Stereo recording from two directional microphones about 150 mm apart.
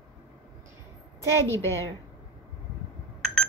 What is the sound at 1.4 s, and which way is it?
Speech, 15° left (ahead or behind).